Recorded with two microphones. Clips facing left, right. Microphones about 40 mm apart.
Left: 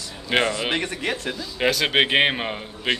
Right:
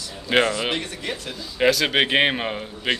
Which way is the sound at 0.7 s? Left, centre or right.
Left.